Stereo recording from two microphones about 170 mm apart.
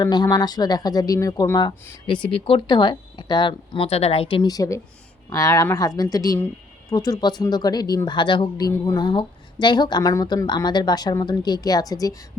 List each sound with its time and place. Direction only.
0.0 s speech: 25° left (ahead or behind)